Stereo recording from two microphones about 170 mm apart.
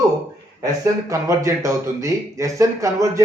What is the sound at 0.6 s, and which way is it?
A man's voice, 20° right (ahead or behind).